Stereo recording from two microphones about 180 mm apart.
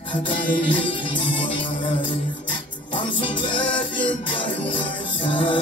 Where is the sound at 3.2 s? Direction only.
25° left (ahead or behind).